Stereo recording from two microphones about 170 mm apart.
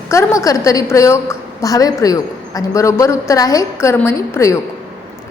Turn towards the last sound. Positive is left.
turn(degrees=15)  # may be behind; listen again after turning